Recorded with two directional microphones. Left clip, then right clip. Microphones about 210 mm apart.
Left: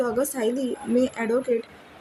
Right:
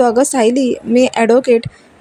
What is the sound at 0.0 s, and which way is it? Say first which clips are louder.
A woman's voice: right 13 dB; 35° right (ahead or behind).